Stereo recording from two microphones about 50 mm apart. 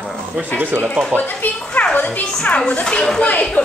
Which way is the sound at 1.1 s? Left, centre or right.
Left.